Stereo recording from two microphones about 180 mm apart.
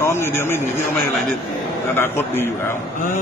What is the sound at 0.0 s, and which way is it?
Speech, 15° left (ahead or behind).